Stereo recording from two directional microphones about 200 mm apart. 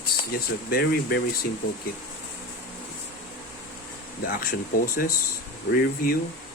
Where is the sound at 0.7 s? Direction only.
50° left (ahead or behind).